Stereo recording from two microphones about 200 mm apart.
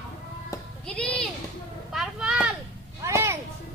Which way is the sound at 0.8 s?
5° left (ahead or behind).